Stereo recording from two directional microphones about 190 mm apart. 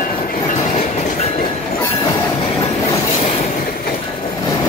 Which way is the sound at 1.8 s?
15° left (ahead or behind).